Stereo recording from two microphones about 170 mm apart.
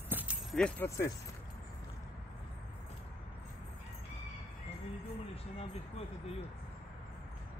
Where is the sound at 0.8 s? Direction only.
15° left (ahead or behind).